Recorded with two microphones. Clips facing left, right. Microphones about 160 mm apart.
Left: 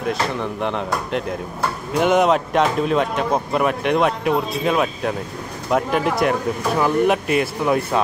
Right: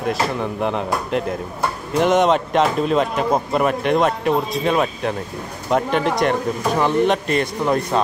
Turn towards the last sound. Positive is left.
turn(degrees=5)  # may be behind; listen again after turning